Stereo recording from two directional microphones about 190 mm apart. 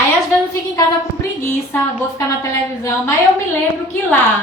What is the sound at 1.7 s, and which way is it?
A woman's voice, 15° left (ahead or behind).